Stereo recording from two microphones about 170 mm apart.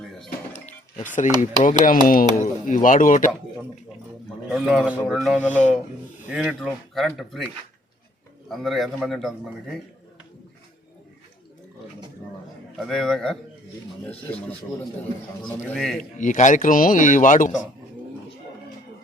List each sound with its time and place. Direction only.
0.5 s a sound: 45° left (ahead or behind)
1.2 s speech: 45° left (ahead or behind)
4.5 s a man's voice: centre (ahead or behind)
6.2 s a man's voice: 5° right (ahead or behind)
8.4 s a man's voice: centre (ahead or behind)
12.7 s a man's voice: centre (ahead or behind)
16.1 s speech: 45° left (ahead or behind)